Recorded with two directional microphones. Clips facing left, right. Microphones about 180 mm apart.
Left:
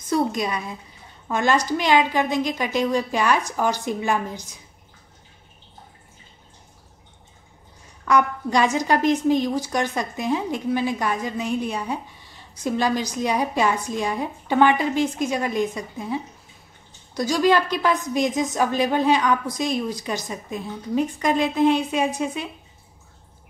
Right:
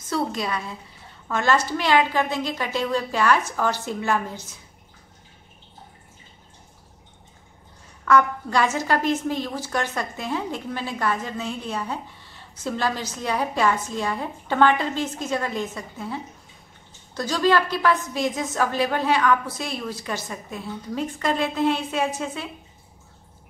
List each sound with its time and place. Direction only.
0.0 s a woman's voice: 15° left (ahead or behind)
8.0 s a woman's voice: 15° left (ahead or behind)